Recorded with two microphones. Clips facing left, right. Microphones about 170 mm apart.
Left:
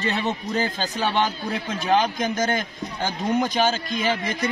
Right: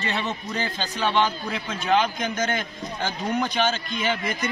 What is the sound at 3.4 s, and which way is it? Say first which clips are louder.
Speech: left 2 dB; 40° left (ahead or behind).